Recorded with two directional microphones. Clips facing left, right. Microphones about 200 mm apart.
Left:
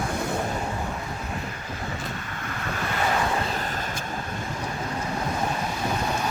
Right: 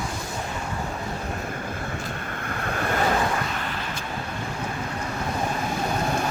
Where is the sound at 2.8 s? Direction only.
50° right (ahead or behind).